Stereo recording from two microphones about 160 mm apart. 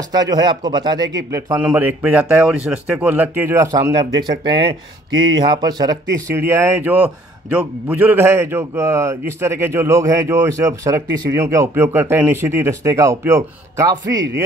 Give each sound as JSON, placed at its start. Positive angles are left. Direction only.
{"t": 0.1, "sound": "speech", "side_deg": -25}
{"t": 1.6, "sound": "speech", "side_deg": -10}
{"t": 5.2, "sound": "speech", "side_deg": -25}